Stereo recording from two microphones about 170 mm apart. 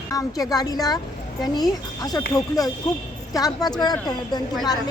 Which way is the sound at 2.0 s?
20° left (ahead or behind).